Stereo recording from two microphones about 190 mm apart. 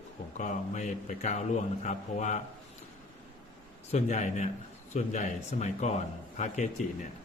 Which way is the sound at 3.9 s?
40° left (ahead or behind).